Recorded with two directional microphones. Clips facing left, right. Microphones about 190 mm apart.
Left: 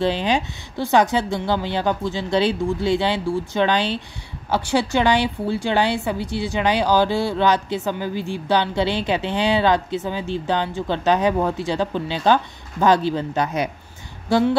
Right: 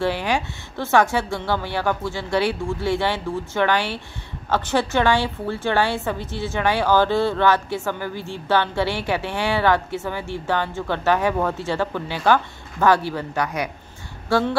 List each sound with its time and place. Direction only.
0.0 s a woman's voice: 20° left (ahead or behind)